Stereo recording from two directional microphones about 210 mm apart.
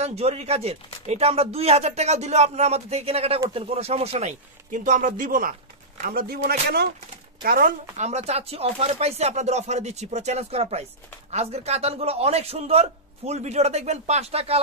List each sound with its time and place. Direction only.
0.0 s speech: 30° right (ahead or behind)